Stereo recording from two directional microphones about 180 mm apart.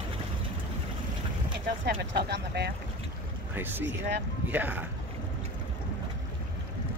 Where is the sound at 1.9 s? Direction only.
65° right (ahead or behind).